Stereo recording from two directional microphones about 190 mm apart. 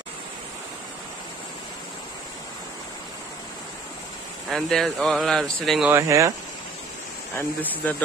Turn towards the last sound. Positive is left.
turn(degrees=10)  # may be behind; listen again after turning